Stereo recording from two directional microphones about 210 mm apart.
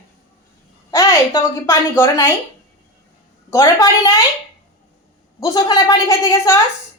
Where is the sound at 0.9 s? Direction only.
15° left (ahead or behind).